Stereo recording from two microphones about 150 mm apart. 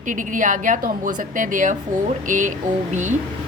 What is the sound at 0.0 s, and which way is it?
A woman's voice, 60° right (ahead or behind).